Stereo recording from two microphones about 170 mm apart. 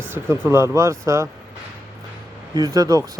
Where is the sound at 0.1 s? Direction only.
15° right (ahead or behind).